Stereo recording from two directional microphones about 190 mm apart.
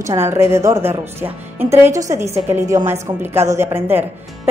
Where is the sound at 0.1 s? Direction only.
15° right (ahead or behind).